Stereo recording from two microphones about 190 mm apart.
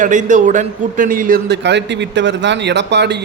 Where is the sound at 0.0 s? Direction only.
40° right (ahead or behind).